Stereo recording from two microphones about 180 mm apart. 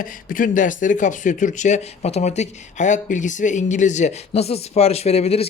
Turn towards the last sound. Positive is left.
turn(degrees=35)  # may be behind; listen again after turning